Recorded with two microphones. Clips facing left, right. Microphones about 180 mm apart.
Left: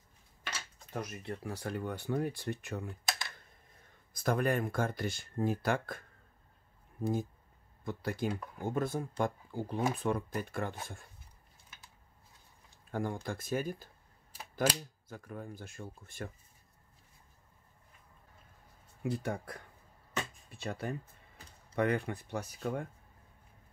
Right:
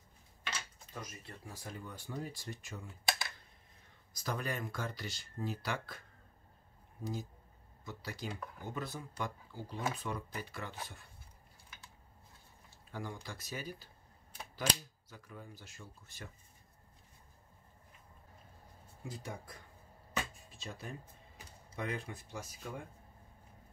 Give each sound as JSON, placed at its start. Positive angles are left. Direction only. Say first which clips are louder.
{"t": 0.9, "sound": "speech", "louder": "left 9 dB", "side_deg": 65}
{"t": 4.1, "sound": "speech", "louder": "left 9 dB", "side_deg": 55}
{"t": 12.9, "sound": "speech", "louder": "left 8 dB", "side_deg": 50}
{"t": 15.0, "sound": "speech", "louder": "left 7 dB", "side_deg": 50}
{"t": 19.0, "sound": "speech", "louder": "left 10 dB", "side_deg": 65}